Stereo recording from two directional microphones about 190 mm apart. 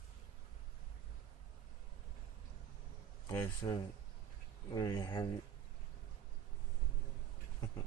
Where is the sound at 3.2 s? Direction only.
20° left (ahead or behind).